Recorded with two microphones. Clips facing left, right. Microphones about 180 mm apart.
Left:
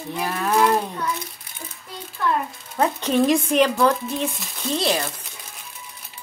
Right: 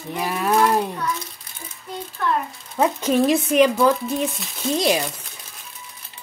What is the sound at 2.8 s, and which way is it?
Speech, 5° right (ahead or behind).